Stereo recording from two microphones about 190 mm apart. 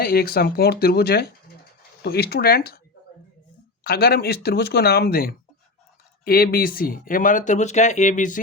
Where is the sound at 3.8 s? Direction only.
55° left (ahead or behind).